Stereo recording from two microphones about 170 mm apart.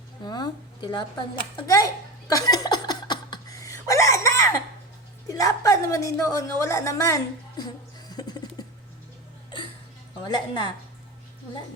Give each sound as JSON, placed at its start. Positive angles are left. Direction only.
{"t": 0.3, "sound": "speech", "side_deg": 25}
{"t": 1.6, "sound": "chuckle", "side_deg": 20}
{"t": 5.3, "sound": "a woman's voice", "side_deg": 20}
{"t": 8.1, "sound": "music", "side_deg": 25}
{"t": 10.2, "sound": "a woman's voice", "side_deg": 25}